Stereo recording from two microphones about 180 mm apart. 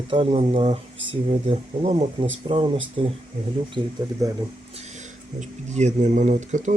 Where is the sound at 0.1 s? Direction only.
30° right (ahead or behind).